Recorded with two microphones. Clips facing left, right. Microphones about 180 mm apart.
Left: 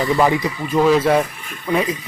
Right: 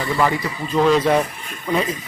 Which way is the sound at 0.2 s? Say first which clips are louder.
Left 3 dB; 20° left (ahead or behind).